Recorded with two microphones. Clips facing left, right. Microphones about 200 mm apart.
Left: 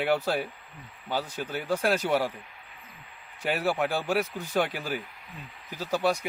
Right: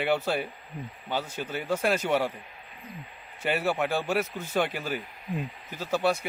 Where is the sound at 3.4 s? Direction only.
10° left (ahead or behind).